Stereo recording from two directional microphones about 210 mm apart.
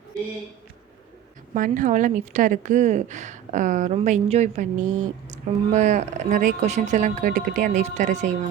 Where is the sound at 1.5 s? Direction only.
40° right (ahead or behind).